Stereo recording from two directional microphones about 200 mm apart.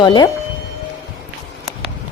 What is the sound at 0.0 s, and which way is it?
Speech, 20° left (ahead or behind).